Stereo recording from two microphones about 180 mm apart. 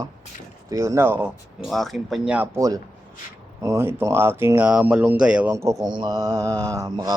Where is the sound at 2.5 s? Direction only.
20° right (ahead or behind).